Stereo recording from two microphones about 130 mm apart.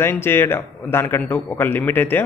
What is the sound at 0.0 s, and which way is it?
A man's voice, 15° left (ahead or behind).